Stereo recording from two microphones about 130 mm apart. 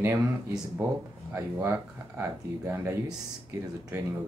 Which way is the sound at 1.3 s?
20° right (ahead or behind).